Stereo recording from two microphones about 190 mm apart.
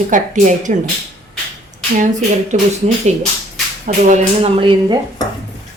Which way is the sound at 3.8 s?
40° right (ahead or behind).